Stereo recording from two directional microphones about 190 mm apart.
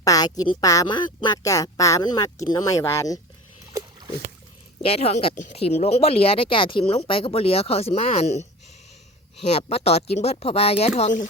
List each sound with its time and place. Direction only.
0.0 s speech: 20° left (ahead or behind)
3.7 s a sound: 20° right (ahead or behind)
4.9 s speech: 30° left (ahead or behind)